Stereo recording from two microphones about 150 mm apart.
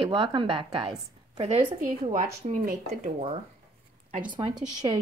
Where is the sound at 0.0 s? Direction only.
35° right (ahead or behind).